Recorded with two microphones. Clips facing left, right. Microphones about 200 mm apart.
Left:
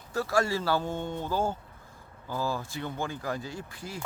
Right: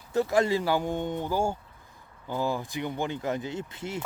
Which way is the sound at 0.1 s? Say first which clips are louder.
Right 4 dB; 20° right (ahead or behind).